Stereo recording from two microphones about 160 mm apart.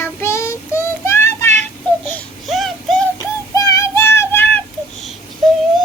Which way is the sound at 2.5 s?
Centre (ahead or behind).